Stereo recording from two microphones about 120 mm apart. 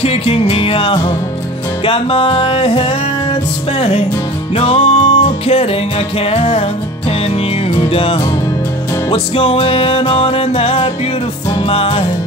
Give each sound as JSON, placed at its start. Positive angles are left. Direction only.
{"t": 0.0, "sound": "music", "side_deg": 55}
{"t": 4.6, "sound": "music", "side_deg": 50}
{"t": 7.7, "sound": "music", "side_deg": 50}